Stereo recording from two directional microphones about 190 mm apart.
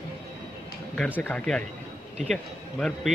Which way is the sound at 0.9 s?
10° left (ahead or behind).